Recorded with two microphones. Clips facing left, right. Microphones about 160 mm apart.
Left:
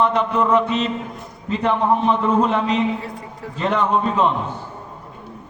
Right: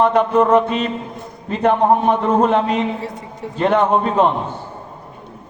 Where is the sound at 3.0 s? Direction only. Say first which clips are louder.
Right 3 dB; 25° right (ahead or behind).